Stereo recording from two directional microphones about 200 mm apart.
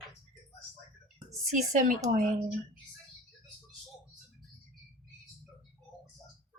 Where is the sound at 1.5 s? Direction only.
40° right (ahead or behind).